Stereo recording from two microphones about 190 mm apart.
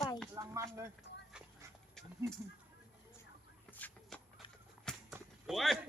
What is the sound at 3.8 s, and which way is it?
Shuffle, 5° left (ahead or behind).